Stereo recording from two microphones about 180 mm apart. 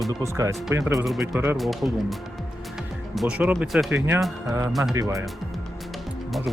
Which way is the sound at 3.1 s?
5° right (ahead or behind).